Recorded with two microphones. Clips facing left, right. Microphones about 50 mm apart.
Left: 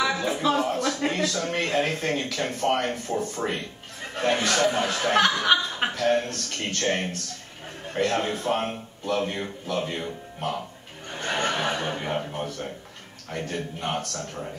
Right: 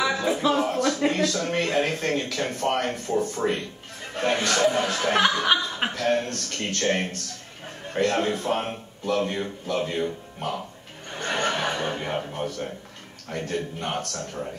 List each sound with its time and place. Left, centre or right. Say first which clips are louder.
0.2 s music: right 1 dB; centre
1.4 s speech: right 1 dB; centre
11.1 s chuckle: right 1 dB; centre
12.3 s speech: right 1 dB; centre